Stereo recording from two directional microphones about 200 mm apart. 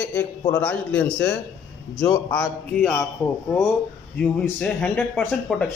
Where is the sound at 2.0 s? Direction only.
20° left (ahead or behind).